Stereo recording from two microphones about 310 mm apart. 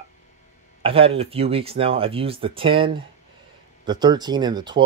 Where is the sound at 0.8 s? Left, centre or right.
Centre.